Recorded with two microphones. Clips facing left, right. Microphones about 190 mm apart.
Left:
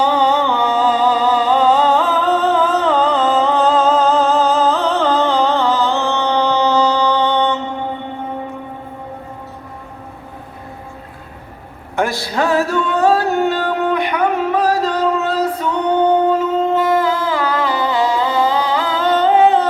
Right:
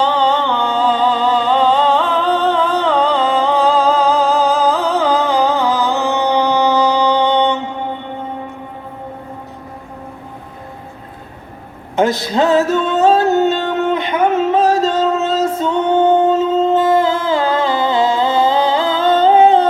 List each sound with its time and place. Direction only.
0.0 s a sound: 10° left (ahead or behind)
5.3 s music: 15° right (ahead or behind)
11.9 s music: 20° right (ahead or behind)